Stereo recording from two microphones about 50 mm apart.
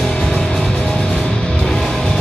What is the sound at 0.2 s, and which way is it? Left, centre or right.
Music, centre.